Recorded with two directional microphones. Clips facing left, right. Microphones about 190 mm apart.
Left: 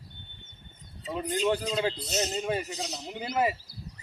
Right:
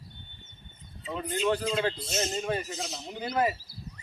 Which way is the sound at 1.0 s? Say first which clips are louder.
Left 1 dB; 35° left (ahead or behind).